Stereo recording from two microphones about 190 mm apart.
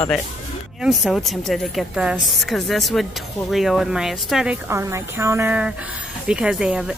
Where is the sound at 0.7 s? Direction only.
5° right (ahead or behind).